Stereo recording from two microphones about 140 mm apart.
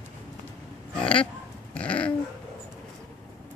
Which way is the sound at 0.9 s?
5° left (ahead or behind).